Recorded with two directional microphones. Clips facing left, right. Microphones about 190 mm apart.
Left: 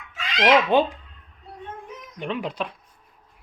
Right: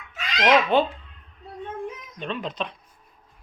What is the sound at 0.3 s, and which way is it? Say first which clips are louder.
Speech: left 1 dB; 10° left (ahead or behind).